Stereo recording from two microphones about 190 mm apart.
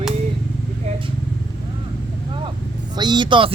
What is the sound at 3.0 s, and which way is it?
Speech, 20° right (ahead or behind).